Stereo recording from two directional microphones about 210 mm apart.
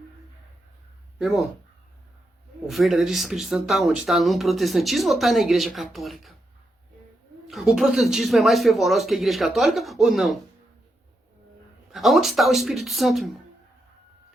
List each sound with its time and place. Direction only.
1.2 s speech: centre (ahead or behind)
2.6 s speech: centre (ahead or behind)
7.4 s speech: centre (ahead or behind)
11.9 s speech: centre (ahead or behind)